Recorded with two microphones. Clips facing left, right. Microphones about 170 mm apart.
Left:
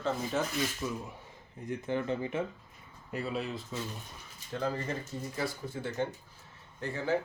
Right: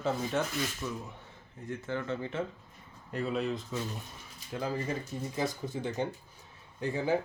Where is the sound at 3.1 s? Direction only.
5° left (ahead or behind).